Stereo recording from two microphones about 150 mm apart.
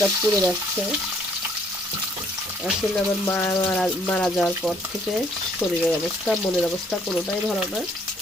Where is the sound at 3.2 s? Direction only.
20° left (ahead or behind).